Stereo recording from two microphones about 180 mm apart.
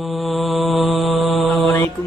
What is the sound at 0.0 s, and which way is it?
Mantra, centre (ahead or behind).